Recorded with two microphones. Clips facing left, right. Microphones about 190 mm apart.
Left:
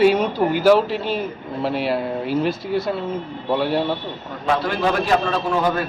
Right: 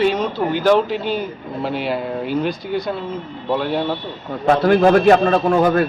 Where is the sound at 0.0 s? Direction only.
10° left (ahead or behind).